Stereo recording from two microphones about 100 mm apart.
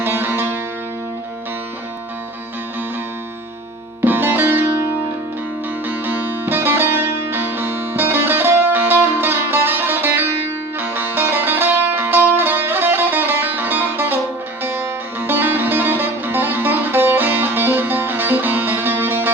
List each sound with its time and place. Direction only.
0.0 s music: 20° right (ahead or behind)
4.0 s music: 20° right (ahead or behind)